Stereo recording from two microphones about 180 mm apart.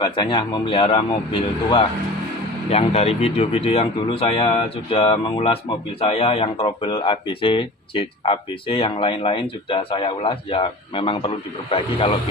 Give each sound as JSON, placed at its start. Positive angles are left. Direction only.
{"t": 0.0, "sound": "speech", "side_deg": 25}